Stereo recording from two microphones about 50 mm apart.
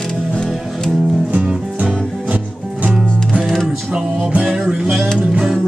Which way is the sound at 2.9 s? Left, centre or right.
Centre.